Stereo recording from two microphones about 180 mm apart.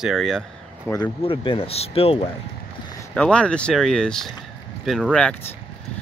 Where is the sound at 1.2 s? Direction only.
30° left (ahead or behind).